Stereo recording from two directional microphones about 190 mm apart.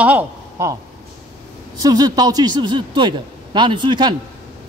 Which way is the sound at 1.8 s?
20° right (ahead or behind).